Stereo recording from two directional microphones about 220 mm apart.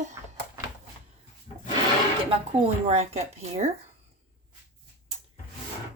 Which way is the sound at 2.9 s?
30° right (ahead or behind).